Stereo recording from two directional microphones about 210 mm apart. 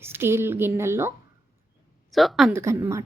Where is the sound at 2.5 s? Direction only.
15° right (ahead or behind).